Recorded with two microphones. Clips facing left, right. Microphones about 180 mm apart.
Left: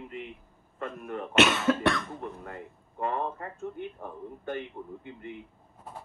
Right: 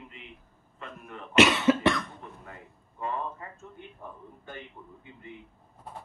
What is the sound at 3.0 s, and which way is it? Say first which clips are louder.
Speech: left 3 dB; 55° left (ahead or behind).